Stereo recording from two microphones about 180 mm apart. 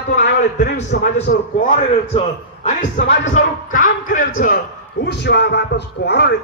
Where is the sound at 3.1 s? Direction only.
90° left.